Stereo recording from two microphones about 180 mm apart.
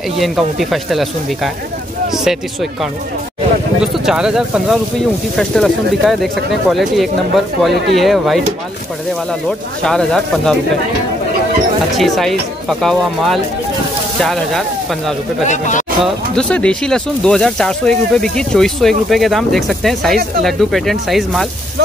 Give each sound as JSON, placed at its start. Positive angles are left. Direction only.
{"t": 0.2, "sound": "speech", "side_deg": 0}
{"t": 9.8, "sound": "speech", "side_deg": 5}
{"t": 12.0, "sound": "speech", "side_deg": 0}
{"t": 15.4, "sound": "a man's voice", "side_deg": 40}
{"t": 16.0, "sound": "speech", "side_deg": 5}